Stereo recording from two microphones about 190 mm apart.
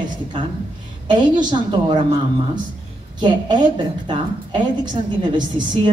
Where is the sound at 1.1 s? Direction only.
25° right (ahead or behind).